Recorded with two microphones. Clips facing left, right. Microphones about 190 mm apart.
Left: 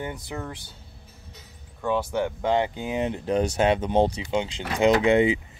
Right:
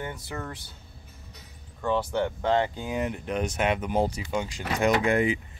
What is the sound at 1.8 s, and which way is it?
Speech, 10° left (ahead or behind).